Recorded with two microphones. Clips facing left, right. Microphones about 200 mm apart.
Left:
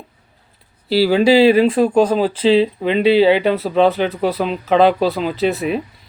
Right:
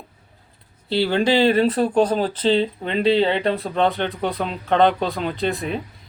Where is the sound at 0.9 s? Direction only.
5° left (ahead or behind).